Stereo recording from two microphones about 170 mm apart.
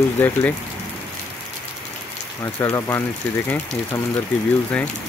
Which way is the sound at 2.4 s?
15° left (ahead or behind).